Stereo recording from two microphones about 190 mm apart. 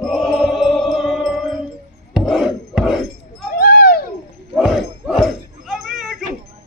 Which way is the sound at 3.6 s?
55° left (ahead or behind).